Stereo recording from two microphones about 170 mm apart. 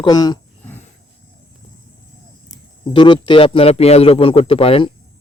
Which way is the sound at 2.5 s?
30° left (ahead or behind).